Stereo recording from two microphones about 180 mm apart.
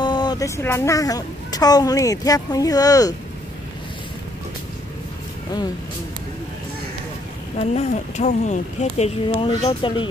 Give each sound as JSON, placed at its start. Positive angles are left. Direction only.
{"t": 0.0, "sound": "a woman's voice", "side_deg": 25}
{"t": 7.5, "sound": "speech", "side_deg": 40}
{"t": 9.5, "sound": "a woman's voice", "side_deg": 25}